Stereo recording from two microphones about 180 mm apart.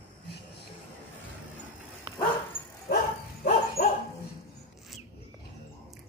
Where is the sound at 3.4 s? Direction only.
60° left (ahead or behind).